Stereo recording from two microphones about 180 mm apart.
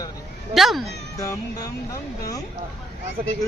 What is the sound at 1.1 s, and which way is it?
Speech, 20° left (ahead or behind).